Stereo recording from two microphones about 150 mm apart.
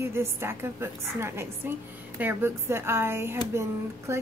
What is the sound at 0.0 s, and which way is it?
A woman's voice, 15° right (ahead or behind).